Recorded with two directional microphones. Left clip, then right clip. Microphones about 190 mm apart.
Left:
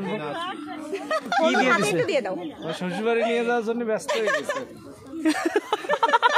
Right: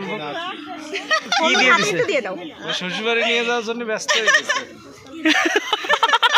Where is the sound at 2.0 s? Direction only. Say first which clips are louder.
Right 3 dB; 45° right (ahead or behind).